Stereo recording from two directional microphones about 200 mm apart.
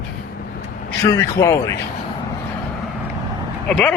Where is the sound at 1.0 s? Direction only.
15° left (ahead or behind).